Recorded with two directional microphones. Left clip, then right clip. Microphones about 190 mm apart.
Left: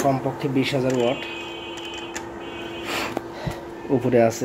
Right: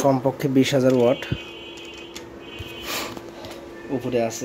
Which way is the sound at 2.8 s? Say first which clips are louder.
Left 2 dB; 5° right (ahead or behind).